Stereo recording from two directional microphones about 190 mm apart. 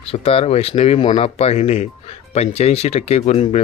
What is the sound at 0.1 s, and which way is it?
Speech, 30° left (ahead or behind).